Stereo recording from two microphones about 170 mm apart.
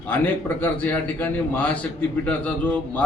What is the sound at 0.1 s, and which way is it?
A man's voice, 10° left (ahead or behind).